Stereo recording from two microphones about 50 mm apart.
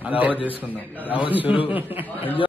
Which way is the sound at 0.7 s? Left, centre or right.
Left.